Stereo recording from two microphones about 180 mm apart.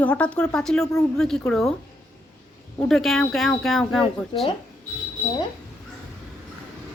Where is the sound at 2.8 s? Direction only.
Centre (ahead or behind).